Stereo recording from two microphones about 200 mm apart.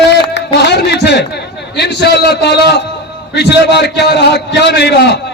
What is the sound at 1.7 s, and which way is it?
A man's voice, 55° left (ahead or behind).